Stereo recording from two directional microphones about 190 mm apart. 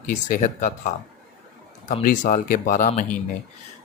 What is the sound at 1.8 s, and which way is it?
Speech, 40° left (ahead or behind).